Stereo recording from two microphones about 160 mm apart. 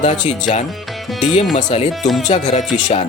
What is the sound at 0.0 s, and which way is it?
Speech, 45° left (ahead or behind).